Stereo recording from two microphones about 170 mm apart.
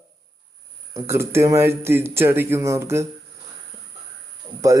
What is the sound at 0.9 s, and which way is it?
Speech, 15° right (ahead or behind).